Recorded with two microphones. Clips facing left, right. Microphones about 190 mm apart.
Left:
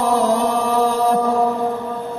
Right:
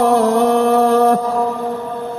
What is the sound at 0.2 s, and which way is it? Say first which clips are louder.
Mantra: right 5 dB; 60° right (ahead or behind).